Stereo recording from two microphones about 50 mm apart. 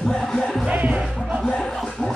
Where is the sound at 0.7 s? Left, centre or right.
Right.